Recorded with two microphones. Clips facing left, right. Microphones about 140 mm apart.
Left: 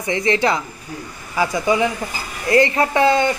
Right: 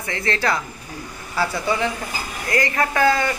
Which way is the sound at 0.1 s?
20° left (ahead or behind).